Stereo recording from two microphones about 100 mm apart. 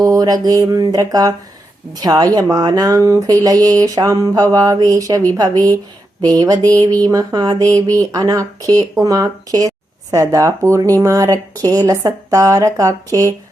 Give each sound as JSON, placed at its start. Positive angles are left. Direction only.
{"t": 0.0, "sound": "speech", "side_deg": -35}